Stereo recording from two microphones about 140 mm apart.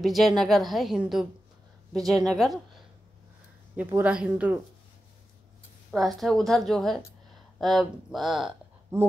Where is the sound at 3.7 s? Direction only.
10° right (ahead or behind).